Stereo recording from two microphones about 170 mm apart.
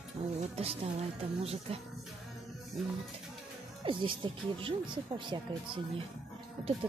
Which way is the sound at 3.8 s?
30° right (ahead or behind).